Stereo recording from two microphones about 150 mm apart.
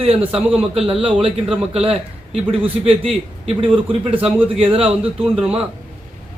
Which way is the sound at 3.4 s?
35° right (ahead or behind).